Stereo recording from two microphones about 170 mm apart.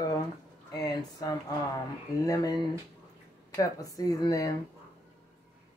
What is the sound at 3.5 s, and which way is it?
Speech, 20° left (ahead or behind).